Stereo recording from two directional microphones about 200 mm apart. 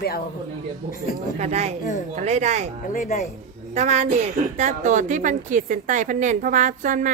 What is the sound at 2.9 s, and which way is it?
Speech, 40° left (ahead or behind).